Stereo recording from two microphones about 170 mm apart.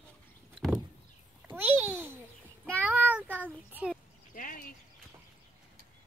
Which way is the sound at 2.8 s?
10° right (ahead or behind).